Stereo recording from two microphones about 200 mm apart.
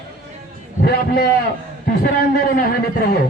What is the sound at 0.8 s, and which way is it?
A man's voice, 50° left (ahead or behind).